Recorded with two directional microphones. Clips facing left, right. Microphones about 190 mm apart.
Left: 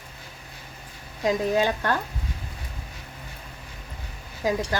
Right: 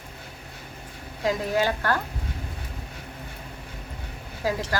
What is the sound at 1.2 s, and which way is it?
Speech, 20° left (ahead or behind).